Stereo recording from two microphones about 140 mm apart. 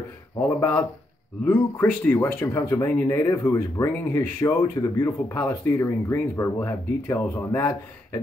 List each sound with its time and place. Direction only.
0.4 s speech: 10° left (ahead or behind)